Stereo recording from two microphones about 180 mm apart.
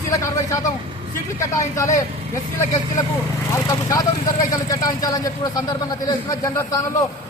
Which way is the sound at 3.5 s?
15° left (ahead or behind).